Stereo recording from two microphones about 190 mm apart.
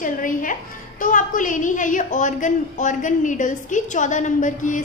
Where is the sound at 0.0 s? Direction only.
45° left (ahead or behind).